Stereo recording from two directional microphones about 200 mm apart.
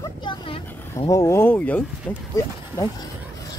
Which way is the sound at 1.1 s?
15° left (ahead or behind).